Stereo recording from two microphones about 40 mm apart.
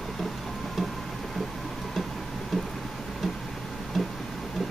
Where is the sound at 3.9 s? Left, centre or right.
Centre.